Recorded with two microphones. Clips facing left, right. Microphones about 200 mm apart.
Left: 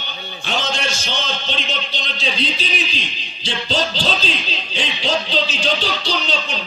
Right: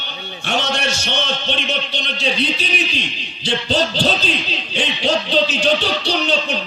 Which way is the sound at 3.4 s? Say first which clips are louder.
Right 3 dB; 60° right (ahead or behind).